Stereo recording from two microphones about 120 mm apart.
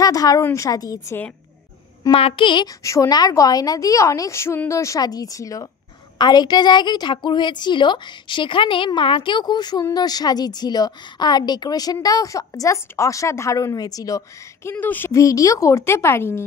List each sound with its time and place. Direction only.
0.0 s a woman's voice: 30° left (ahead or behind)
2.0 s a woman's voice: 50° left (ahead or behind)
2.8 s a woman's voice: 25° left (ahead or behind)
15.1 s a woman's voice: 30° left (ahead or behind)